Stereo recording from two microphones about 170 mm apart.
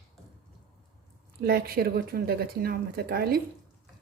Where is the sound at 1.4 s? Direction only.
65° right (ahead or behind).